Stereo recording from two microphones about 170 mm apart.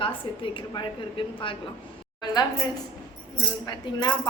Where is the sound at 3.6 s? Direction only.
25° left (ahead or behind).